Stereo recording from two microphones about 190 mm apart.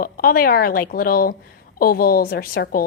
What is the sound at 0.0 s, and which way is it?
A woman's voice, 50° left (ahead or behind).